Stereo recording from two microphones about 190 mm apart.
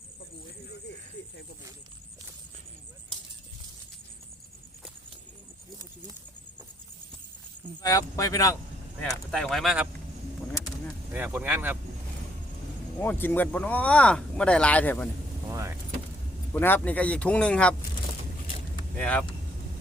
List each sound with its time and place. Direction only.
7.8 s speech: 20° left (ahead or behind)
9.3 s speech: centre (ahead or behind)
11.1 s speech: 10° right (ahead or behind)
13.0 s speech: 10° left (ahead or behind)
15.4 s vehicle: 15° right (ahead or behind)
16.5 s speech: 10° left (ahead or behind)
18.9 s speech: 5° left (ahead or behind)